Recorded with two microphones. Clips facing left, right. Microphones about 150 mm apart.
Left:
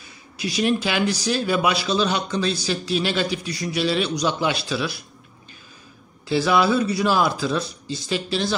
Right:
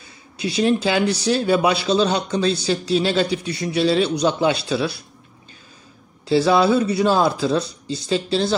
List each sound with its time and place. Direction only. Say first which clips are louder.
0.0 s speech: right 3 dB; 25° right (ahead or behind)
6.2 s speech: right 3 dB; 30° right (ahead or behind)